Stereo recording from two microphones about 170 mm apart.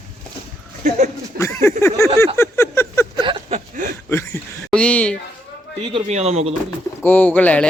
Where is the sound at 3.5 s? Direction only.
45° right (ahead or behind).